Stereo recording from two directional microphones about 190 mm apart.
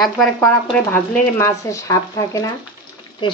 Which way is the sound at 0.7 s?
10° left (ahead or behind).